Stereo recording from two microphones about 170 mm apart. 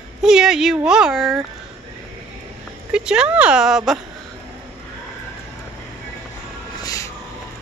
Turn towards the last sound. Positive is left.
turn(degrees=20)  # may be behind; listen again after turning